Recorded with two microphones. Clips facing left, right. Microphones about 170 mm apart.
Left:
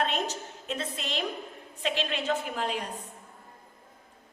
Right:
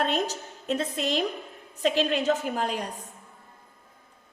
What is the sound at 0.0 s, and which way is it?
A woman's voice, 40° right (ahead or behind).